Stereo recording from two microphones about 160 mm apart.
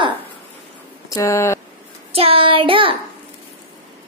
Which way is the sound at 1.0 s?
20° left (ahead or behind).